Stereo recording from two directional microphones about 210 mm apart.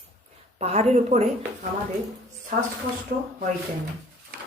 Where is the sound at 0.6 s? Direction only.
30° right (ahead or behind).